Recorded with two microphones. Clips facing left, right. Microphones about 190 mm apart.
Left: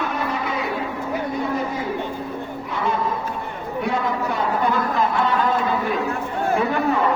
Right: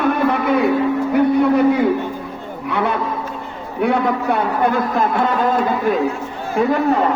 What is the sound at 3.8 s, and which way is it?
A man's voice, 65° right (ahead or behind).